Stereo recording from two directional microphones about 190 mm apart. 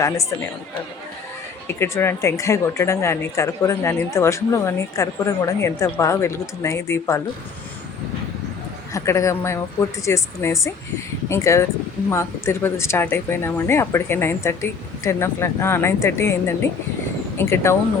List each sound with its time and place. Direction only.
1.6 s speech: 10° left (ahead or behind)
8.9 s speech: 15° left (ahead or behind)